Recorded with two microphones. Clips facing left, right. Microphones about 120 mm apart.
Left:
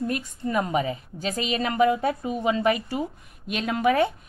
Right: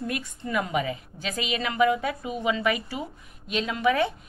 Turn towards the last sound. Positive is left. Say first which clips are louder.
# left 2 dB
turn(degrees=45)  # may be behind; listen again after turning